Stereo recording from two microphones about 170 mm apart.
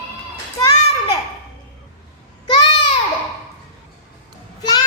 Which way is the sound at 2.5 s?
25° left (ahead or behind).